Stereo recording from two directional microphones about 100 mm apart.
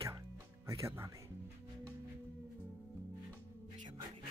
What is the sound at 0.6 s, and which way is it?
Speech, 30° right (ahead or behind).